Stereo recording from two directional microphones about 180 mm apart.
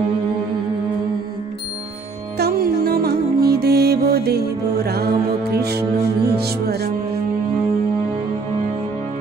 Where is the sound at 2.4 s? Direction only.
55° right (ahead or behind).